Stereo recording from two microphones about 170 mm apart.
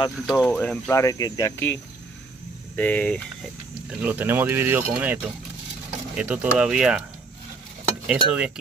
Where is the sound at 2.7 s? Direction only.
10° left (ahead or behind).